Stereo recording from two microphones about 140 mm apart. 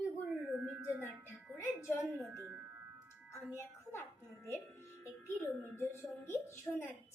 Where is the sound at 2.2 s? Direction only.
20° right (ahead or behind).